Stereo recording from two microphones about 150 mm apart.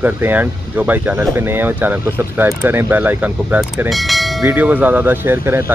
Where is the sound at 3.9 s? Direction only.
Centre (ahead or behind).